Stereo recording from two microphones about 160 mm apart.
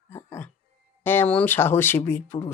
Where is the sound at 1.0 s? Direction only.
10° left (ahead or behind).